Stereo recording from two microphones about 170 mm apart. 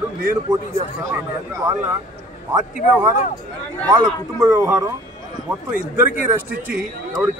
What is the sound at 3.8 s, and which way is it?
Speech, 25° right (ahead or behind).